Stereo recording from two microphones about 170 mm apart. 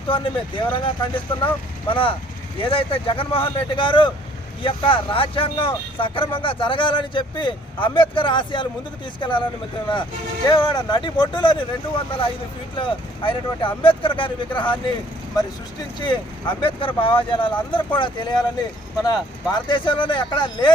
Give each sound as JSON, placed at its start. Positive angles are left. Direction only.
{"t": 0.1, "sound": "speech", "side_deg": 30}
{"t": 9.9, "sound": "speech", "side_deg": 30}